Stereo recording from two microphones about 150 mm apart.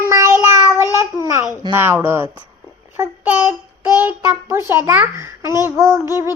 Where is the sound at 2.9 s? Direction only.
15° right (ahead or behind).